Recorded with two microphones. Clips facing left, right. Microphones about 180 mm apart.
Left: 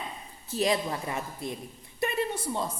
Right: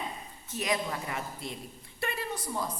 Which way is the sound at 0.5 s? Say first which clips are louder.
Left 5 dB; 30° left (ahead or behind).